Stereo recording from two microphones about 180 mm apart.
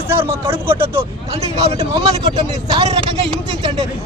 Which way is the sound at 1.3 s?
35° right (ahead or behind).